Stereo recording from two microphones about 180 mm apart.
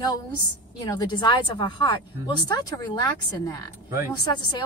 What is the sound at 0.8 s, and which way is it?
A woman's voice, 25° left (ahead or behind).